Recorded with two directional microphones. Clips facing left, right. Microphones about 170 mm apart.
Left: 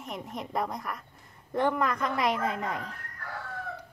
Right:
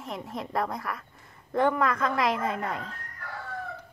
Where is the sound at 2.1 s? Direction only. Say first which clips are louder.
Right 1 dB; 60° right (ahead or behind).